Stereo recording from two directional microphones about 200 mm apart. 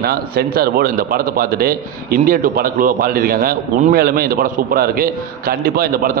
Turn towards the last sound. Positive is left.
turn(degrees=-45)  # may be behind; listen again after turning